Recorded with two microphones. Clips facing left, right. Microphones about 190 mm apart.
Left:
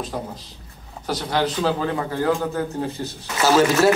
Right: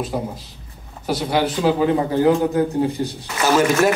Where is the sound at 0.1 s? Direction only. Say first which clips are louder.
Right 4 dB; 10° right (ahead or behind).